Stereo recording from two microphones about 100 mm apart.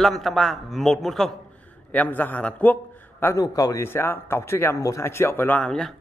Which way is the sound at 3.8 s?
20° left (ahead or behind).